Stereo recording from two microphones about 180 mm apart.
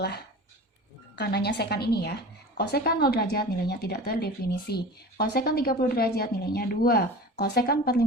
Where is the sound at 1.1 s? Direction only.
65° left (ahead or behind).